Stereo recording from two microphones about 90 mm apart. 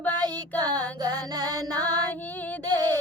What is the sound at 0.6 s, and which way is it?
Female singing, 45° right (ahead or behind).